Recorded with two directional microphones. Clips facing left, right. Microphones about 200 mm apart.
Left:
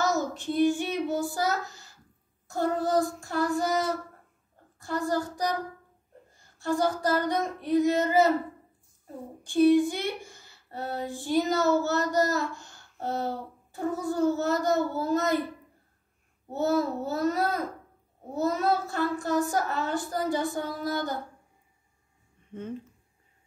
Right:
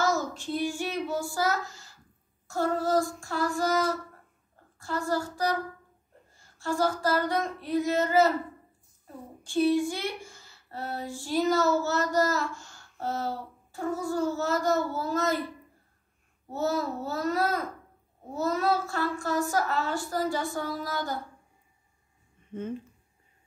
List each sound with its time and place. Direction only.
0.0 s child singing: 20° left (ahead or behind)
2.4 s speech: 15° left (ahead or behind)
4.7 s speech: 15° left (ahead or behind)
9.4 s speech: 15° left (ahead or behind)
16.8 s a child's voice: 20° left (ahead or behind)